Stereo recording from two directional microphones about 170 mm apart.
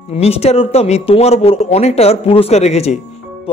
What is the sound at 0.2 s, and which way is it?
Speech, 35° left (ahead or behind).